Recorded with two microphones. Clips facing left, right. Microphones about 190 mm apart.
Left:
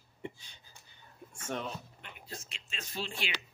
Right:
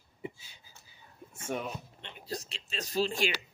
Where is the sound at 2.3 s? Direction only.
35° right (ahead or behind).